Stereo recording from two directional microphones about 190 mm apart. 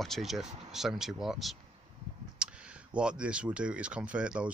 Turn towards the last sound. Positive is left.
turn(degrees=-5)  # may be behind; listen again after turning